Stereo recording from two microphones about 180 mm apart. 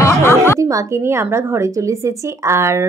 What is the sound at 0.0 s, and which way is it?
Music, 15° left (ahead or behind).